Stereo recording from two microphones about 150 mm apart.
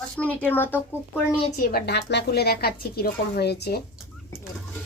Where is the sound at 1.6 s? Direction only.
85° left.